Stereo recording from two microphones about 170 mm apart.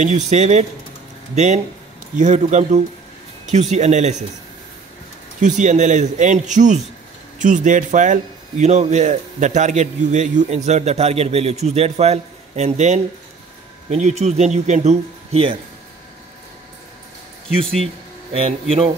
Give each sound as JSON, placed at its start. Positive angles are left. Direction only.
{"t": 0.3, "sound": "a man's voice", "side_deg": -45}
{"t": 5.4, "sound": "a man's voice", "side_deg": -45}
{"t": 18.3, "sound": "speech", "side_deg": -35}